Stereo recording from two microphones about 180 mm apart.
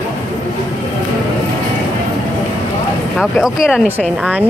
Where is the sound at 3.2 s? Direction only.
Centre (ahead or behind).